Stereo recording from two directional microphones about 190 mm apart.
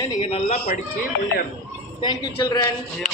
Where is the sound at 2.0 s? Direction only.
25° left (ahead or behind).